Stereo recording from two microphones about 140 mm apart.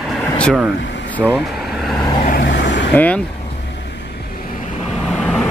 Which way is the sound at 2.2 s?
90° left.